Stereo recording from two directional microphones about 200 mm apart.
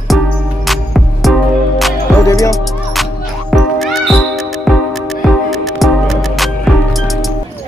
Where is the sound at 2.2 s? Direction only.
15° left (ahead or behind).